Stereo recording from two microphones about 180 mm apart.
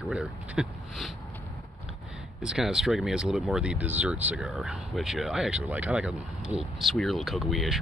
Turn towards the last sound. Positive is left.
turn(degrees=0)  # may be behind; listen again after turning